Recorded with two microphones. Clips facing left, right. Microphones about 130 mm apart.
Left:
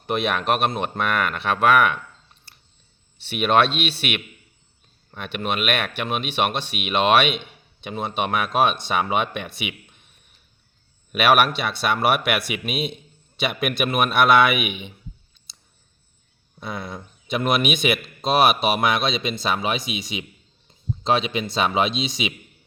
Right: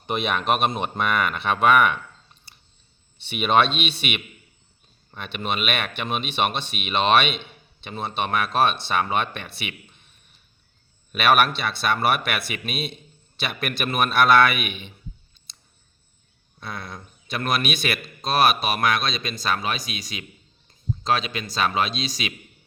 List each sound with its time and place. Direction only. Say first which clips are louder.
0.0 s speech: left 2 dB; centre (ahead or behind)
3.2 s a man's voice: left 1 dB; centre (ahead or behind)
11.1 s speech: left 1 dB; 10° left (ahead or behind)
16.6 s speech: left 4 dB; 15° left (ahead or behind)